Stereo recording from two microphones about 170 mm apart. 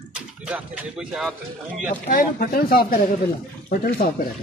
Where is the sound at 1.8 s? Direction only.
55° left (ahead or behind).